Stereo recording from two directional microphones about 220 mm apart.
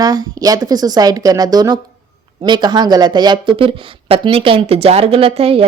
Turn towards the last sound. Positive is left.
turn(degrees=-25)  # may be behind; listen again after turning